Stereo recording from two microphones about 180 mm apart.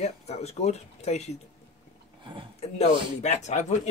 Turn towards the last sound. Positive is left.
turn(degrees=40)  # may be behind; listen again after turning